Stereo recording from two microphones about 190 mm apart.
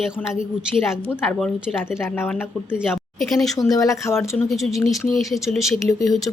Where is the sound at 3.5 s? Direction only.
20° left (ahead or behind).